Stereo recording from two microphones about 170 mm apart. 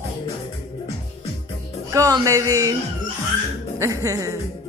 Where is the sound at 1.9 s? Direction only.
20° right (ahead or behind).